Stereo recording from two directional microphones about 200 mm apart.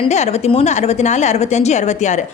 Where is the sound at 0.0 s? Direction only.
35° left (ahead or behind).